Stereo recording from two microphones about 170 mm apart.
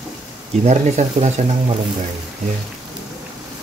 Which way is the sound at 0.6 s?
45° right (ahead or behind).